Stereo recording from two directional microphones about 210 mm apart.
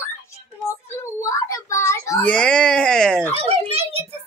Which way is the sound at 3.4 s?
30° right (ahead or behind).